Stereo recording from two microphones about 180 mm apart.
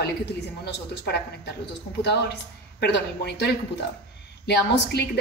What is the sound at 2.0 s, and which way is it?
A woman's voice, 70° left (ahead or behind).